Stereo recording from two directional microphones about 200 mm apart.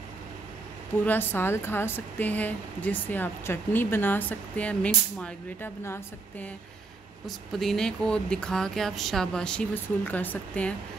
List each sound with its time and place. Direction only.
1.0 s speech: 10° left (ahead or behind)
7.2 s speech: centre (ahead or behind)